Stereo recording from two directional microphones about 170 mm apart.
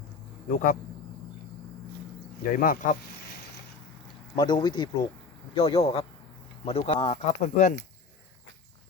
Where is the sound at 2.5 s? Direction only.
55° left (ahead or behind).